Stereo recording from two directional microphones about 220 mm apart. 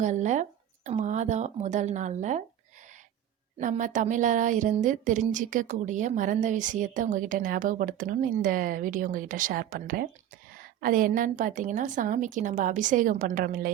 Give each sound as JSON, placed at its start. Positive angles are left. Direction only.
{"t": 0.0, "sound": "a woman's voice", "side_deg": -35}
{"t": 3.6, "sound": "a woman's voice", "side_deg": -35}